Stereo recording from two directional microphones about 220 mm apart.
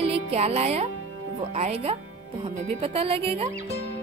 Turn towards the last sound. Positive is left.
turn(degrees=-25)  # may be behind; listen again after turning